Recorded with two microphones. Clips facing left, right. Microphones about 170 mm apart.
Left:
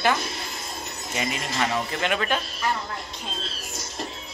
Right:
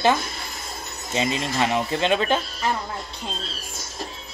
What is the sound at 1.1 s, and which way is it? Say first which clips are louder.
Speech: right 5 dB; 20° right (ahead or behind).